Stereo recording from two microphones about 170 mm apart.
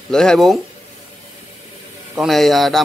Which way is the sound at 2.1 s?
Centre (ahead or behind).